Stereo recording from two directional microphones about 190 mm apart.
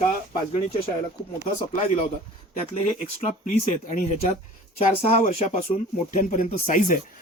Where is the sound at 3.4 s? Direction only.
45° left (ahead or behind).